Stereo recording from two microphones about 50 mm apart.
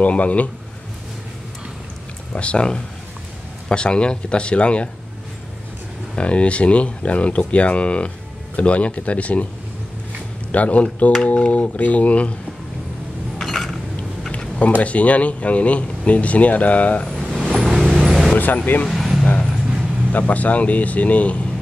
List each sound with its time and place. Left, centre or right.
0.0 s speech: left
2.3 s speech: left
6.1 s speech: left
10.5 s speech: left
13.4 s a sound: centre
14.8 s speech: left
17.3 s vehicle: centre
18.3 s vehicle: left
18.9 s vehicle: centre
20.1 s speech: left